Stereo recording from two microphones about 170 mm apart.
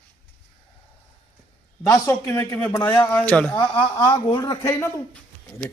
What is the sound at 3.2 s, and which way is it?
Speech, 10° left (ahead or behind).